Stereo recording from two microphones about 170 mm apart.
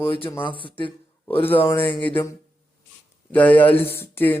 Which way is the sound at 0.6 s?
30° left (ahead or behind).